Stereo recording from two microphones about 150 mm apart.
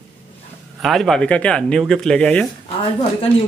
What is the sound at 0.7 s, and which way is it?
Speech, centre (ahead or behind).